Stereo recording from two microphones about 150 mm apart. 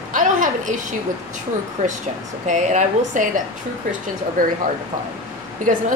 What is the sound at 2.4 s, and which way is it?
Speech, 55° right (ahead or behind).